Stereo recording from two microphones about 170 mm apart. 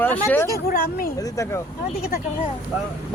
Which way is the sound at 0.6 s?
55° left (ahead or behind).